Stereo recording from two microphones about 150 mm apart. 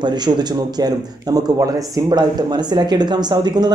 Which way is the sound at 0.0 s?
30° right (ahead or behind).